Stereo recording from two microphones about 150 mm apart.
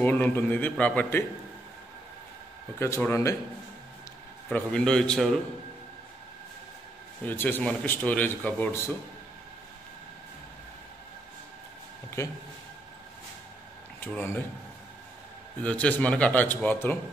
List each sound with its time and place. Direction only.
0.0 s a man's voice: 10° left (ahead or behind)
2.8 s a man's voice: 15° left (ahead or behind)
4.5 s a man's voice: 5° left (ahead or behind)
7.2 s a man's voice: 10° left (ahead or behind)
12.2 s speech: 20° left (ahead or behind)
13.9 s speech: 15° left (ahead or behind)
15.6 s a man's voice: 10° left (ahead or behind)